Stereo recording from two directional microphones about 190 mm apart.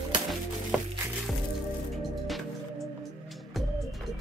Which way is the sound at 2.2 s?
Centre (ahead or behind).